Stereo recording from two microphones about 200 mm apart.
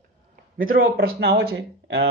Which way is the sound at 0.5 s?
45° right (ahead or behind).